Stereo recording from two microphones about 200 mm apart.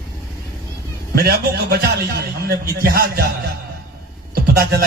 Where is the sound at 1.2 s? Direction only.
50° right (ahead or behind).